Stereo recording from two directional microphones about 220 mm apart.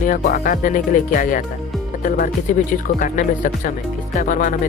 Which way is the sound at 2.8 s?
35° left (ahead or behind).